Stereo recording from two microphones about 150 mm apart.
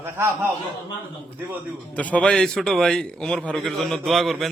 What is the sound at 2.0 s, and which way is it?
A man's voice, 10° left (ahead or behind).